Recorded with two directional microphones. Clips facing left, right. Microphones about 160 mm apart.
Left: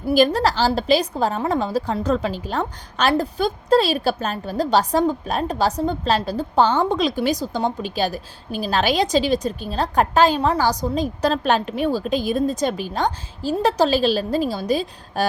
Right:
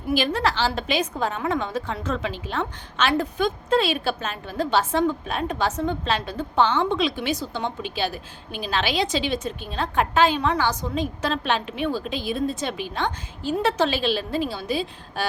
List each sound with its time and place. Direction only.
0.1 s a woman's voice: 40° left (ahead or behind)